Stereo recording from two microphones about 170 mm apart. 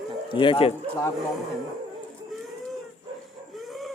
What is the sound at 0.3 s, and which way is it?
Speech, 30° left (ahead or behind).